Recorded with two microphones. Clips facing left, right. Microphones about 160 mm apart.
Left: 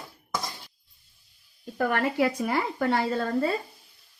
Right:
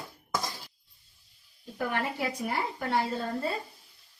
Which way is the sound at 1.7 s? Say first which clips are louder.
Left 7 dB; 70° left (ahead or behind).